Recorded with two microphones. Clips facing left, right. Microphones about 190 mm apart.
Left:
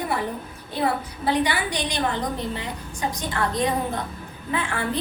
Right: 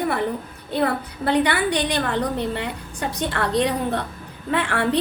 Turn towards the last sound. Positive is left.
turn(degrees=-70)  # may be behind; listen again after turning